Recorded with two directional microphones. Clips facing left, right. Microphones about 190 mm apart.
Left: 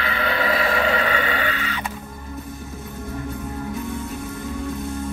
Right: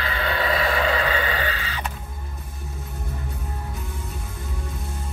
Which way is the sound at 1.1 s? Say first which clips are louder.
Left 2 dB; 30° right (ahead or behind).